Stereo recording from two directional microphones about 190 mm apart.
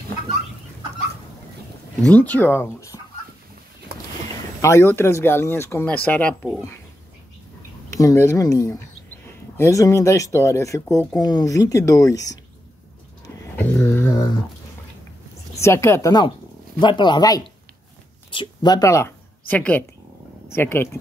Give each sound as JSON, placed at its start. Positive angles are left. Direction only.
{"t": 2.0, "sound": "speech", "side_deg": 5}
{"t": 4.6, "sound": "speech", "side_deg": 15}
{"t": 7.9, "sound": "speech", "side_deg": 15}
{"t": 13.6, "sound": "speech", "side_deg": 10}
{"t": 15.6, "sound": "speech", "side_deg": 15}